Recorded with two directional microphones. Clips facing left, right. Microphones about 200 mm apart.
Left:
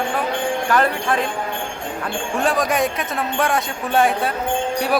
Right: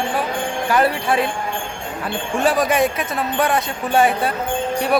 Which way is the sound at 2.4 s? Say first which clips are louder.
Right 2 dB; 5° right (ahead or behind).